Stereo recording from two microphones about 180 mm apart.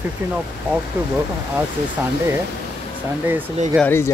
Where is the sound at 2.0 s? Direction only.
10° right (ahead or behind).